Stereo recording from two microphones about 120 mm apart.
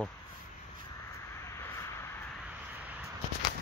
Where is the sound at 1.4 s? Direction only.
25° left (ahead or behind).